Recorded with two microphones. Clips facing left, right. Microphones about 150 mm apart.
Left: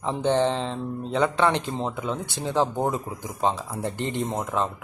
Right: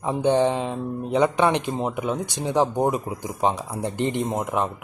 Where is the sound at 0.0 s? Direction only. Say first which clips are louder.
Right 3 dB; 15° right (ahead or behind).